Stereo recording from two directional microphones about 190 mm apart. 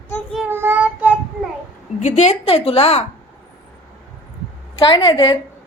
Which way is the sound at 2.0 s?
40° left (ahead or behind).